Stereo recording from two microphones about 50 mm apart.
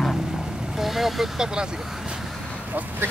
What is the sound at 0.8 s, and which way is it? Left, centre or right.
Speech, centre.